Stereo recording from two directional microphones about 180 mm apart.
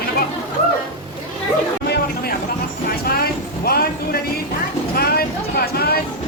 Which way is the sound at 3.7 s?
55° left (ahead or behind).